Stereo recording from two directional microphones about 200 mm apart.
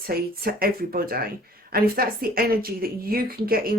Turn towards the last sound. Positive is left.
turn(degrees=-45)  # may be behind; listen again after turning